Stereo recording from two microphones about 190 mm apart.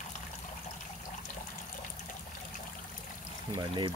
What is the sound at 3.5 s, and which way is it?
Speech, 25° right (ahead or behind).